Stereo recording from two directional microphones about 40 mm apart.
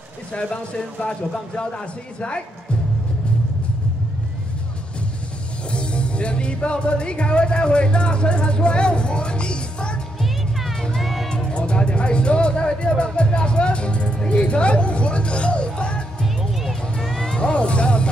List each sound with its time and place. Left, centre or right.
0.3 s a man's voice: left
5.7 s speech: left
10.2 s music: centre
11.5 s music: left
16.6 s vehicle: centre
17.4 s music: left